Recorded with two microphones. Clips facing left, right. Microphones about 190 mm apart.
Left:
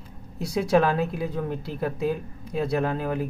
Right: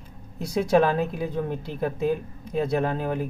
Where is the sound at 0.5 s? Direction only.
Centre (ahead or behind).